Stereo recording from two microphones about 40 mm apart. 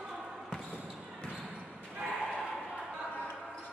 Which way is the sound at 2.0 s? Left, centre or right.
Right.